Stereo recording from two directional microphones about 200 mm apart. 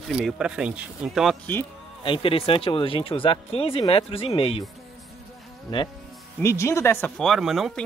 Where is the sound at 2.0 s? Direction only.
25° left (ahead or behind).